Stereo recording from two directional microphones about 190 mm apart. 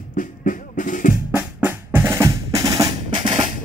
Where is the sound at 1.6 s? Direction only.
10° right (ahead or behind).